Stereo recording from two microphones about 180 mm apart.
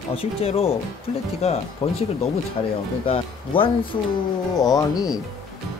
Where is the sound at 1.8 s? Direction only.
35° left (ahead or behind).